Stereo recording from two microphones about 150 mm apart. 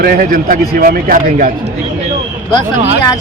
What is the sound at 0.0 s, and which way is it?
Speech, 70° right (ahead or behind).